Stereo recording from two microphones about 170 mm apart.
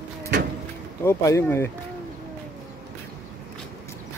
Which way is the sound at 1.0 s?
15° left (ahead or behind).